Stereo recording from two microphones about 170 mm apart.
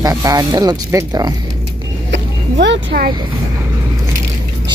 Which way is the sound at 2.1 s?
90° right.